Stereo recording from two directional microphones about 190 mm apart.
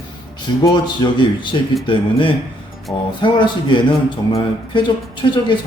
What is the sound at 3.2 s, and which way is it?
Speech, 25° left (ahead or behind).